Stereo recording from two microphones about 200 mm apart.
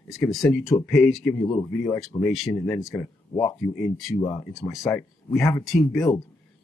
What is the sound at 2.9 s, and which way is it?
Speech, 15° left (ahead or behind).